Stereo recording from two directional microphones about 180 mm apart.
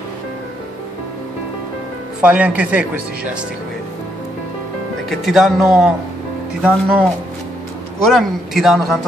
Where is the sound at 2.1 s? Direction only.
5° right (ahead or behind).